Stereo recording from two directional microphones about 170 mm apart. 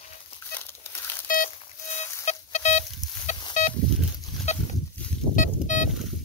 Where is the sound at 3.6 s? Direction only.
45° left (ahead or behind).